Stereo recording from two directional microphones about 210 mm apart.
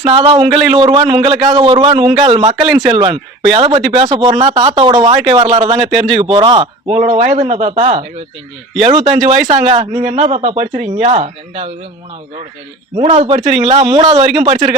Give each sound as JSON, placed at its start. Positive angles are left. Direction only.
{"t": 0.0, "sound": "speech", "side_deg": -20}
{"t": 13.0, "sound": "speech", "side_deg": -30}